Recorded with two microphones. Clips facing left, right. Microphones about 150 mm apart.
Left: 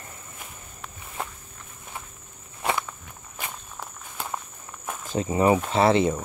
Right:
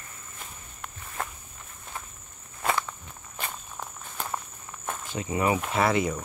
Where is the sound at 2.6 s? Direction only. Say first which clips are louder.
Left 1 dB; 15° left (ahead or behind).